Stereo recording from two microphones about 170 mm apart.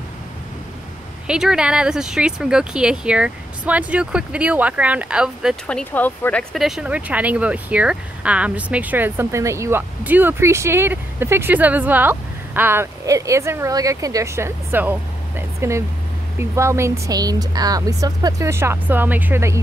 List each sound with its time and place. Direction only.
1.2 s speech: 5° right (ahead or behind)
5.7 s speech: 10° left (ahead or behind); by 19.6 s 15° right (ahead or behind)